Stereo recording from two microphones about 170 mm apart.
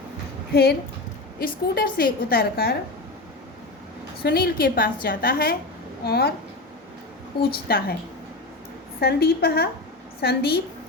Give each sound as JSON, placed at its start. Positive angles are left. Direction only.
{"t": 0.5, "sound": "a woman's voice", "side_deg": 75}
{"t": 1.4, "sound": "a woman's voice", "side_deg": 60}
{"t": 4.2, "sound": "a woman's voice", "side_deg": 65}
{"t": 7.5, "sound": "a woman's voice", "side_deg": 65}
{"t": 9.0, "sound": "a woman's voice", "side_deg": 65}